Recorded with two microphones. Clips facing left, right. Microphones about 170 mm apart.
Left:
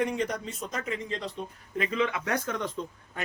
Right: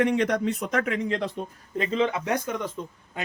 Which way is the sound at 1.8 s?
30° right (ahead or behind).